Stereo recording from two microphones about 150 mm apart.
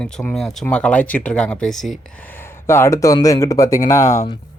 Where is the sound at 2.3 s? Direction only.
15° left (ahead or behind).